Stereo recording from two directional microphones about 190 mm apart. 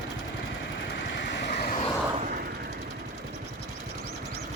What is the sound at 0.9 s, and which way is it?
Vehicle, 70° left (ahead or behind).